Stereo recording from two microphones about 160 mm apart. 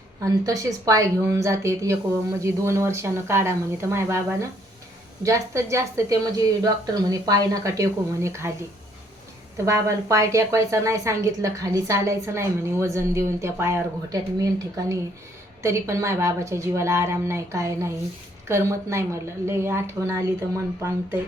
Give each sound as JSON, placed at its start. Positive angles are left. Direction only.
{"t": 0.3, "sound": "a woman's voice", "side_deg": -20}
{"t": 9.6, "sound": "a woman's voice", "side_deg": -20}